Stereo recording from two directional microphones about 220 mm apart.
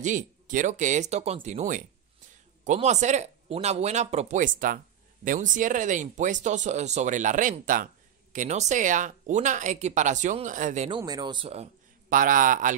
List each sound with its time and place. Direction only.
0.0 s speech: 35° right (ahead or behind)
11.0 s a man's voice: 20° right (ahead or behind); by 12.7 s 35° right (ahead or behind)